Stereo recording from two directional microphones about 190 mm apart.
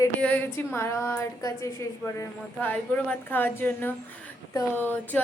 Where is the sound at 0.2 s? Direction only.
5° left (ahead or behind).